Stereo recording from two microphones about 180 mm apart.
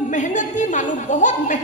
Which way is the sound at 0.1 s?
45° left (ahead or behind).